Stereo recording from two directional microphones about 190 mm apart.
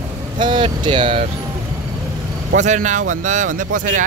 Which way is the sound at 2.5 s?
40° right (ahead or behind).